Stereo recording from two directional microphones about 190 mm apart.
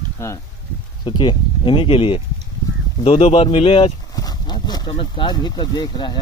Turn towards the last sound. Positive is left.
turn(degrees=20)  # may be behind; listen again after turning